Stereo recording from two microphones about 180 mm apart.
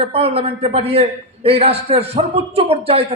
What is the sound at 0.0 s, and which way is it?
A man's voice, 35° right (ahead or behind).